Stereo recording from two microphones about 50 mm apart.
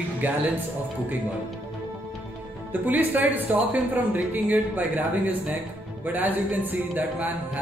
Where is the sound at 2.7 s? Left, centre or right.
Right.